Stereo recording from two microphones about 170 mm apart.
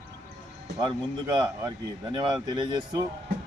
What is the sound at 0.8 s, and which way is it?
A man's voice, 25° right (ahead or behind).